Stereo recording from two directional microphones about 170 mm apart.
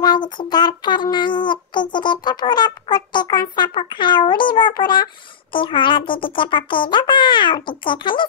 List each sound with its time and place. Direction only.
0.0 s speech: 25° left (ahead or behind)